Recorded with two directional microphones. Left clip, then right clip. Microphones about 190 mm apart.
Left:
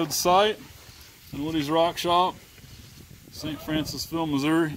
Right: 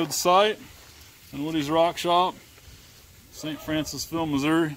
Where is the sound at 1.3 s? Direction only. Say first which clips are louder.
Even; 5° left (ahead or behind).